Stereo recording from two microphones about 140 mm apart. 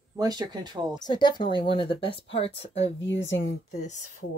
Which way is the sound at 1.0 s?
30° left (ahead or behind).